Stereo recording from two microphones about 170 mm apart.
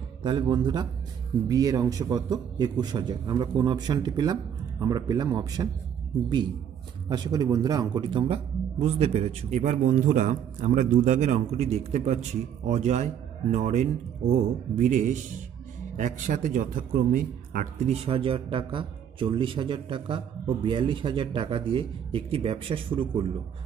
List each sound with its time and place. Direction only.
0.2 s a man's voice: 25° right (ahead or behind)
7.1 s a man's voice: 25° right (ahead or behind)